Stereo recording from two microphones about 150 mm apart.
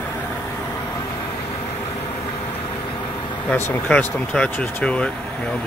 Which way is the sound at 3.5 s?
10° left (ahead or behind).